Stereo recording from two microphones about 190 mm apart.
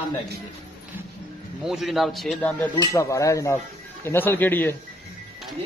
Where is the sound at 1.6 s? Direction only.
Centre (ahead or behind).